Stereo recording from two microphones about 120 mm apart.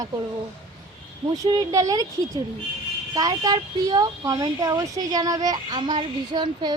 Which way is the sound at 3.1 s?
35° right (ahead or behind).